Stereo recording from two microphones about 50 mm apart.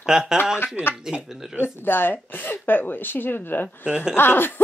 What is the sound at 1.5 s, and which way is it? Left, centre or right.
Speech, left.